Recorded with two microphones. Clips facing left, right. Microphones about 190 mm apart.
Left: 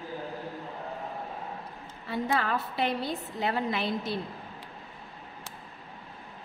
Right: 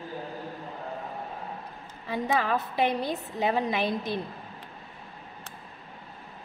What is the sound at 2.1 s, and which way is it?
A woman's voice, 15° right (ahead or behind).